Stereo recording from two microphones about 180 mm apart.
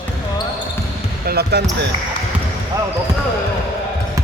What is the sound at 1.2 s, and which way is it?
Speech, 60° right (ahead or behind).